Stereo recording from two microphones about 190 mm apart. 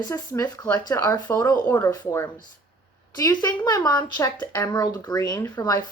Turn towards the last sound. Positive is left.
turn(degrees=20)  # may be behind; listen again after turning